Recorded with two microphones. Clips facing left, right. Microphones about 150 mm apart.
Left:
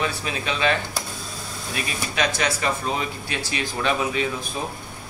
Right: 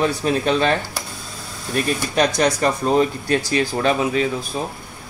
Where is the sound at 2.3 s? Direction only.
40° right (ahead or behind).